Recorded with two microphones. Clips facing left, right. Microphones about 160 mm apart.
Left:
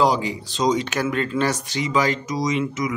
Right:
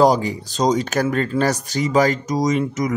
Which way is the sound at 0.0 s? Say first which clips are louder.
Right 4 dB; 45° right (ahead or behind).